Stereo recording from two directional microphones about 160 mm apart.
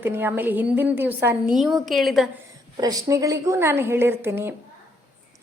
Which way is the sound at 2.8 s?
20° right (ahead or behind).